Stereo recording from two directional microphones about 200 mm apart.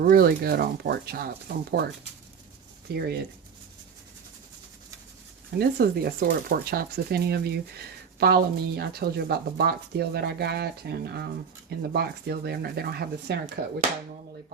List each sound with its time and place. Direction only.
0.0 s speech: 50° right (ahead or behind)
2.9 s speech: 50° right (ahead or behind)
5.5 s speech: 50° right (ahead or behind)